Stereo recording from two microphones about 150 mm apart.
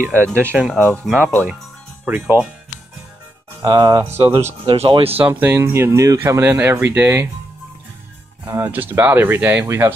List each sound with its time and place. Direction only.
0.0 s speech: 15° right (ahead or behind)
3.6 s speech: 30° right (ahead or behind)
5.1 s speech: 10° right (ahead or behind)
8.5 s speech: 15° right (ahead or behind)